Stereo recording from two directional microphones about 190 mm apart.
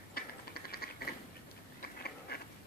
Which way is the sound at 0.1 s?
50° left (ahead or behind).